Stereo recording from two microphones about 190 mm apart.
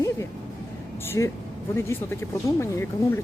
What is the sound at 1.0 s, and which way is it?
Speech, 15° left (ahead or behind).